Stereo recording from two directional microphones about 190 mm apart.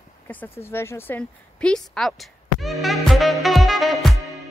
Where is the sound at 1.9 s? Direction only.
Centre (ahead or behind).